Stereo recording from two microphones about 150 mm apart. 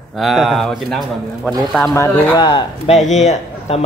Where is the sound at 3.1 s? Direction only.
50° left (ahead or behind).